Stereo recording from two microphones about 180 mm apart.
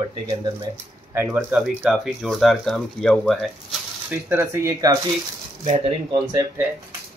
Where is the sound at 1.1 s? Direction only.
15° right (ahead or behind).